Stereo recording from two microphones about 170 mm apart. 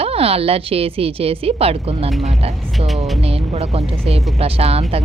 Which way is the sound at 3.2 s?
35° right (ahead or behind).